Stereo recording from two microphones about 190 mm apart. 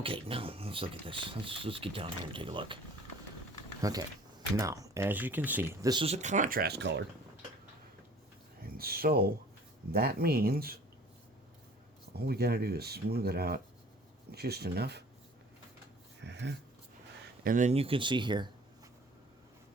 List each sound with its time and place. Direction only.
0.0 s speech: 30° right (ahead or behind)
3.8 s speech: 20° right (ahead or behind)
6.2 s speech: 40° right (ahead or behind); by 7.0 s 65° right (ahead or behind)
8.6 s speech: 50° right (ahead or behind)
12.1 s speech: 55° right (ahead or behind)
16.2 s a sound: 65° right (ahead or behind)
17.4 s speech: 45° right (ahead or behind); by 18.5 s 25° right (ahead or behind)